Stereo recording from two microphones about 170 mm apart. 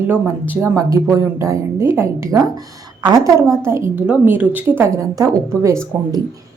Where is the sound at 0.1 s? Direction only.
10° right (ahead or behind).